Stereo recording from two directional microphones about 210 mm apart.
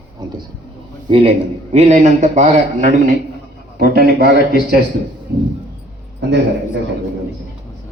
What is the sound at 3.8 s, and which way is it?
Speech, 45° right (ahead or behind).